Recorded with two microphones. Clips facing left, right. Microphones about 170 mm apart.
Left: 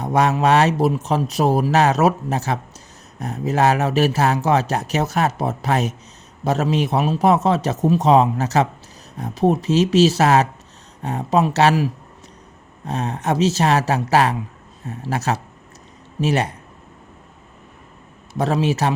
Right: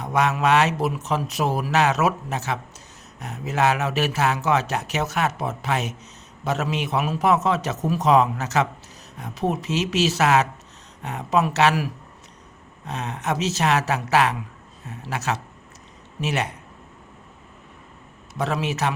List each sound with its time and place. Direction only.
0.0 s speech: 35° left (ahead or behind)
18.3 s speech: 35° left (ahead or behind)